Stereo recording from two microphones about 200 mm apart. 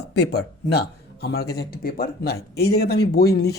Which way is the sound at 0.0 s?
55° left (ahead or behind).